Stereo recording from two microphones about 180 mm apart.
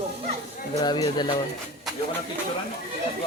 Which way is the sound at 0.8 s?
25° left (ahead or behind).